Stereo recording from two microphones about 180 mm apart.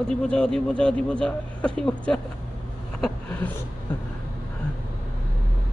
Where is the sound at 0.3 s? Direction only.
5° left (ahead or behind).